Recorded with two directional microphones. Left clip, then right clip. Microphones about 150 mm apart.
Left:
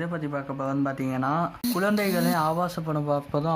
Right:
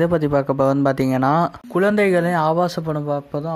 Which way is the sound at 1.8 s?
30° right (ahead or behind).